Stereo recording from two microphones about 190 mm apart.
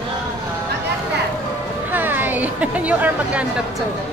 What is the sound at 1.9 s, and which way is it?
Chatter, 10° right (ahead or behind).